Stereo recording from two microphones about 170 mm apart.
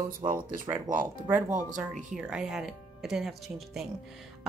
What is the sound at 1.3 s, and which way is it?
Speech, 15° right (ahead or behind).